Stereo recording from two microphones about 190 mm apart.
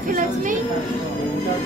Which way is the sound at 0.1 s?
45° right (ahead or behind).